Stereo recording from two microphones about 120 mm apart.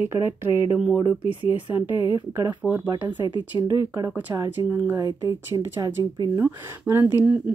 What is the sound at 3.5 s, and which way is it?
Speech, 30° right (ahead or behind).